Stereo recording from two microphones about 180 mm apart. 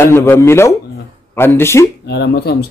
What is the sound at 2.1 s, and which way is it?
Speech, 65° left (ahead or behind).